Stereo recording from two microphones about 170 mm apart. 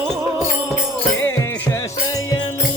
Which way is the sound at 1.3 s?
15° left (ahead or behind).